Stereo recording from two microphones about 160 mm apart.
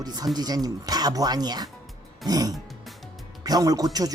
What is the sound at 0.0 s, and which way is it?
A woman's voice, 25° right (ahead or behind).